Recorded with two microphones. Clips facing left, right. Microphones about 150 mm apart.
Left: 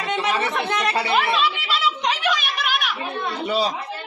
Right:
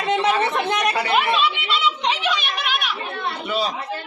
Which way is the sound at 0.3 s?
20° right (ahead or behind).